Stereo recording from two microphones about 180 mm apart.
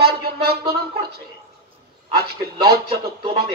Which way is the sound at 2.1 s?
60° right (ahead or behind).